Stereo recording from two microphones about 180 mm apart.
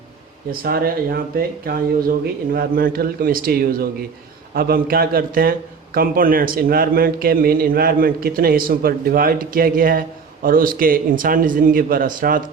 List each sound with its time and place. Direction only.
0.5 s a man's voice: 55° right (ahead or behind)